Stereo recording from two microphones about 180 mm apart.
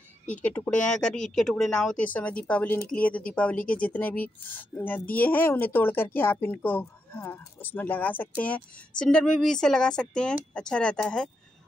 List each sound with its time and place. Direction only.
0.4 s speech: 5° left (ahead or behind)